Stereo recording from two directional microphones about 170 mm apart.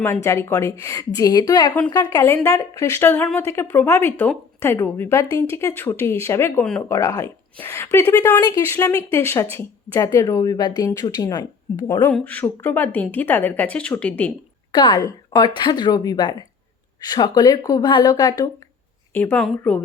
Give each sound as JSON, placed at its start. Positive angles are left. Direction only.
{"t": 0.0, "sound": "a woman's voice", "side_deg": 15}
{"t": 12.1, "sound": "a woman's voice", "side_deg": 10}
{"t": 14.7, "sound": "a woman's voice", "side_deg": 25}
{"t": 19.1, "sound": "a woman's voice", "side_deg": 10}